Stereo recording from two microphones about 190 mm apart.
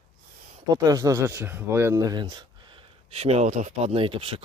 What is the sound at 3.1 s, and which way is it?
Speech, 35° right (ahead or behind).